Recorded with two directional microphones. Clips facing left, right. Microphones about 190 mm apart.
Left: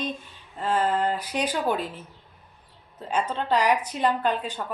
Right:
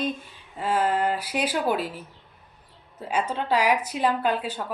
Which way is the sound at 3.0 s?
10° right (ahead or behind).